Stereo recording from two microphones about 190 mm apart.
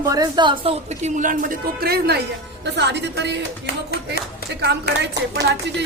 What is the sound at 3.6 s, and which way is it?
Speech, 55° left (ahead or behind).